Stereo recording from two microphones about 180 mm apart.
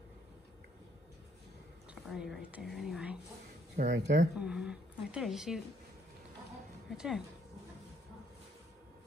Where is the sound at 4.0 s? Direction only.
40° right (ahead or behind).